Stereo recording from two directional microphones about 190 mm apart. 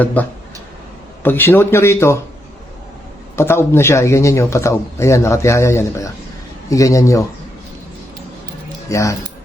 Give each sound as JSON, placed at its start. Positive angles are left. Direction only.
{"t": 0.0, "sound": "speech", "side_deg": 10}
{"t": 3.3, "sound": "speech", "side_deg": 15}
{"t": 8.9, "sound": "speech", "side_deg": 15}